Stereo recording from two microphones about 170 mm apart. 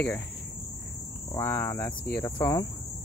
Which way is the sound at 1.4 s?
15° left (ahead or behind).